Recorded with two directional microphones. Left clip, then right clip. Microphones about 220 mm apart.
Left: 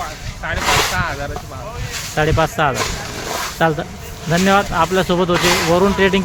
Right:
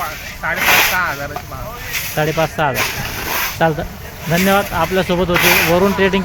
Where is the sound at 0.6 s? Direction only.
30° right (ahead or behind).